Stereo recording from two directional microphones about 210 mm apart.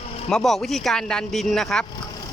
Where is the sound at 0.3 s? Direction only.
Centre (ahead or behind).